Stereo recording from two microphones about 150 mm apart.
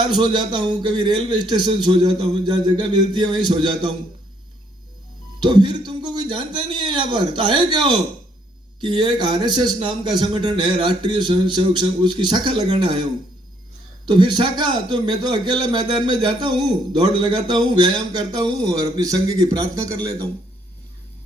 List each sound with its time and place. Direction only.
0.1 s a man's voice: 30° right (ahead or behind)
5.4 s a man's voice: 30° right (ahead or behind)
8.8 s a man's voice: 30° right (ahead or behind)
14.3 s a man's voice: 30° right (ahead or behind)